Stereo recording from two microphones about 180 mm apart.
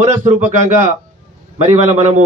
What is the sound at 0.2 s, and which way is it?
A man's voice, 40° right (ahead or behind).